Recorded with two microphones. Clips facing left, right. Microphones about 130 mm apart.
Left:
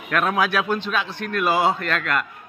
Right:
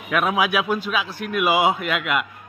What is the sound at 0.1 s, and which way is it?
A man's voice, 5° right (ahead or behind).